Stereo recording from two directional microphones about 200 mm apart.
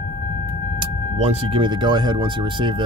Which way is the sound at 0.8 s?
25° right (ahead or behind).